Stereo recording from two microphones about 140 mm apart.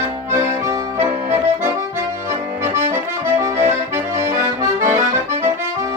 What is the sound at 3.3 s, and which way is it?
Accordion, 20° right (ahead or behind).